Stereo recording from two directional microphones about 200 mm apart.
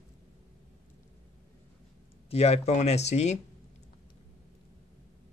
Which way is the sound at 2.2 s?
30° left (ahead or behind).